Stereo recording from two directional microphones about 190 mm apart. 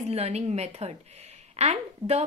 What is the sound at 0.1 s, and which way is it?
A woman's voice, 35° right (ahead or behind).